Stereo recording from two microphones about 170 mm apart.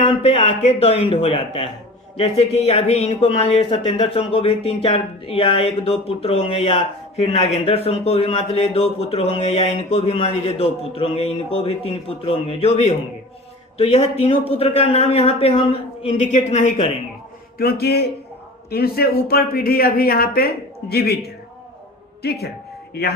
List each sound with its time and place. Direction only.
0.0 s speech: 35° left (ahead or behind)
17.6 s a man's voice: 65° left (ahead or behind)
22.2 s speech: 70° left (ahead or behind)